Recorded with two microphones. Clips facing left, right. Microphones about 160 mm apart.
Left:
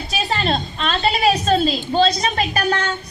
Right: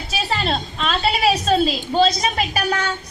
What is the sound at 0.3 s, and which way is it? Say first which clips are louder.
A woman's voice: left 2 dB; 5° right (ahead or behind).